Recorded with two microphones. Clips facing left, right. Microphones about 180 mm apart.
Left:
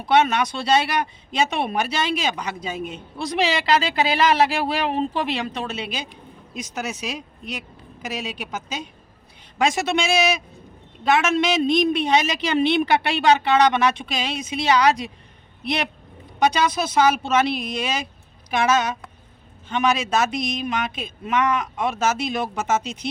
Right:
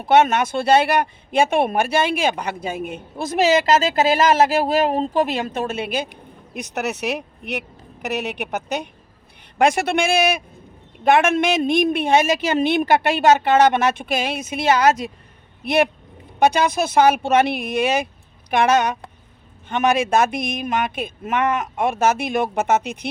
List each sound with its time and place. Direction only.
0.0 s speech: 50° right (ahead or behind)
6.5 s speech: 60° right (ahead or behind)